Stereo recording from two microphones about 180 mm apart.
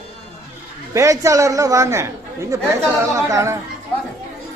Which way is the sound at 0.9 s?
15° right (ahead or behind).